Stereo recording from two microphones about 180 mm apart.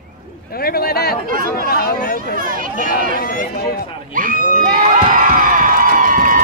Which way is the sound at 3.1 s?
50° left (ahead or behind).